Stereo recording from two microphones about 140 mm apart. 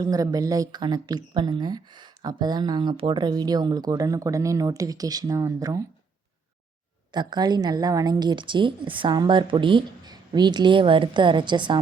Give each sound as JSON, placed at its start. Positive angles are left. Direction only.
{"t": 0.0, "sound": "speech", "side_deg": -25}
{"t": 7.1, "sound": "a woman's voice", "side_deg": -30}